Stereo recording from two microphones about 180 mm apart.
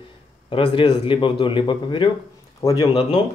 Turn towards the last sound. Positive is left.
turn(degrees=30)  # may be behind; listen again after turning